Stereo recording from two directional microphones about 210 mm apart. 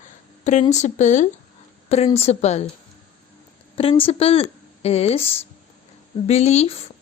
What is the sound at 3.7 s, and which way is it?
Speech, 25° left (ahead or behind).